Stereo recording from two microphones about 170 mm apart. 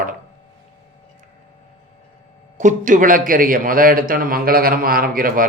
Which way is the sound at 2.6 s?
45° right (ahead or behind).